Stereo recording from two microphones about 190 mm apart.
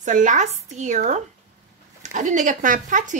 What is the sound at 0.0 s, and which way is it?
Speech, 40° right (ahead or behind).